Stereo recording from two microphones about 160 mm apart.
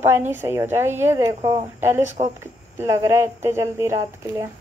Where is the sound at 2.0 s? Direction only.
50° right (ahead or behind).